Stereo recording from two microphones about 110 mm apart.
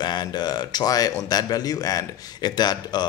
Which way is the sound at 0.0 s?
40° left (ahead or behind).